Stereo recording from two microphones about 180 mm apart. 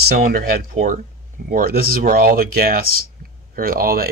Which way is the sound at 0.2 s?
55° right (ahead or behind).